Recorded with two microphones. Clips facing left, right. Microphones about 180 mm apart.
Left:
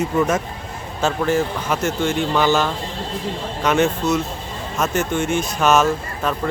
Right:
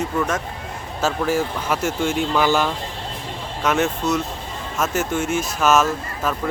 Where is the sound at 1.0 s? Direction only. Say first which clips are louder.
Left 2 dB; 5° right (ahead or behind).